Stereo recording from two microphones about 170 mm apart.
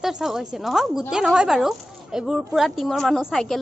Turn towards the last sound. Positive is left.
turn(degrees=0)  # may be behind; listen again after turning